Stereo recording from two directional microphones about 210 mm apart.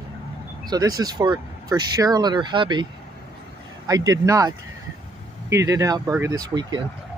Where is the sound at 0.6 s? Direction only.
20° right (ahead or behind).